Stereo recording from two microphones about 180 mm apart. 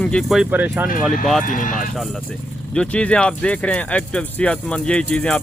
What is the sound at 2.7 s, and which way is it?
Speech, 5° left (ahead or behind).